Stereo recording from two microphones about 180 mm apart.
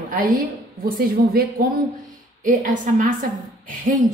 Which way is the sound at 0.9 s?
55° right (ahead or behind).